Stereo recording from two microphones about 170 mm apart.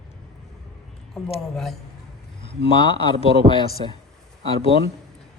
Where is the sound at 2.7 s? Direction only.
30° left (ahead or behind).